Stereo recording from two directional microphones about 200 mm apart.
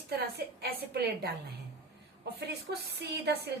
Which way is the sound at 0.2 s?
50° right (ahead or behind).